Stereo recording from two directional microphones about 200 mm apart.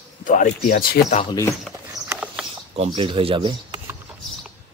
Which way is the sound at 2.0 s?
5° right (ahead or behind).